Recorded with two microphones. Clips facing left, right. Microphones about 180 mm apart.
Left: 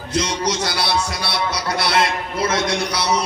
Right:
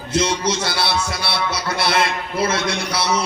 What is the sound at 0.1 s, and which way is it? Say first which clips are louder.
A man's voice: right 2 dB; 25° right (ahead or behind).